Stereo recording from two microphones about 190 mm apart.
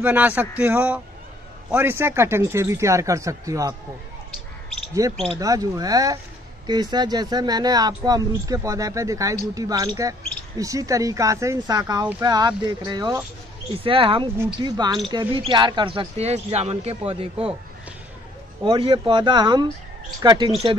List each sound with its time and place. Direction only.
0.0 s speech: 10° right (ahead or behind)
5.1 s speech: centre (ahead or behind)
5.4 s speech: 20° right (ahead or behind)
18.6 s speech: 25° right (ahead or behind)